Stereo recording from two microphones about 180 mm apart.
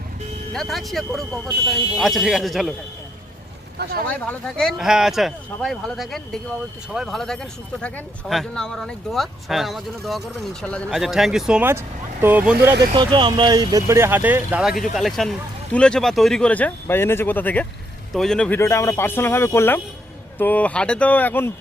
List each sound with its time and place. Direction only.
0.5 s speech: centre (ahead or behind)
3.8 s speech: 65° right (ahead or behind)
4.3 s speech: 5° left (ahead or behind)
12.9 s speech: 25° right (ahead or behind); by 21.5 s 10° left (ahead or behind)